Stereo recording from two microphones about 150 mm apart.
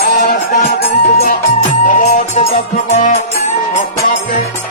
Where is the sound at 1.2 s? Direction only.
60° left (ahead or behind).